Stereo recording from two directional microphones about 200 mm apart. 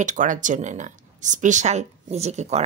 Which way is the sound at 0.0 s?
40° right (ahead or behind).